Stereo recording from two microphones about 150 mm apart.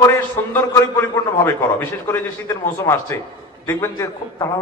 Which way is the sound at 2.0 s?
15° left (ahead or behind).